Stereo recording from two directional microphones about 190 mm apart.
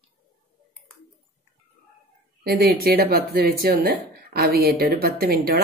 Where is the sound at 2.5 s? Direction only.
55° right (ahead or behind).